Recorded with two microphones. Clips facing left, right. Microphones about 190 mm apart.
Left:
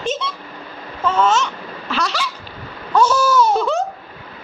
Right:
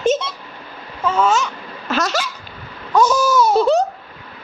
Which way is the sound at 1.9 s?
45° right (ahead or behind).